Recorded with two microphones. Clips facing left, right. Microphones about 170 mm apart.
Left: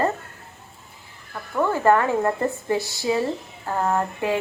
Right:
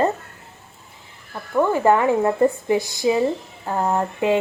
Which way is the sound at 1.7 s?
15° right (ahead or behind).